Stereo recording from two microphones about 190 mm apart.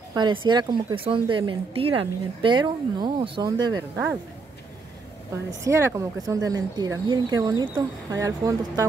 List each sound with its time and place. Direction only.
0.1 s a woman's voice: 25° right (ahead or behind)
5.6 s speech: 15° right (ahead or behind)